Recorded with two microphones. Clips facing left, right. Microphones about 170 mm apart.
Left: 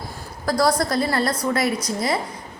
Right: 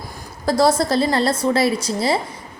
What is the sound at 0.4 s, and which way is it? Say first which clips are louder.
A woman's voice: right 3 dB; 25° right (ahead or behind).